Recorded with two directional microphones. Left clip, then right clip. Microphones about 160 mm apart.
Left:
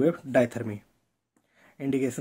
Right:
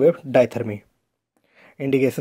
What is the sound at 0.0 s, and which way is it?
Speech, 35° right (ahead or behind).